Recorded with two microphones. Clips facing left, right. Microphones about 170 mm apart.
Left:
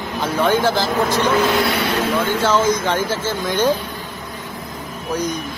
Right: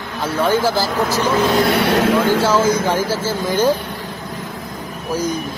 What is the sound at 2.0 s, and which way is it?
Speech, 90° right.